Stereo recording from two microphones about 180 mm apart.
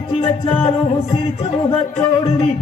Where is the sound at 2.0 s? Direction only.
35° left (ahead or behind).